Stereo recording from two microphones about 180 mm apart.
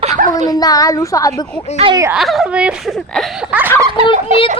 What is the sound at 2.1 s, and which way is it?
Speech, centre (ahead or behind).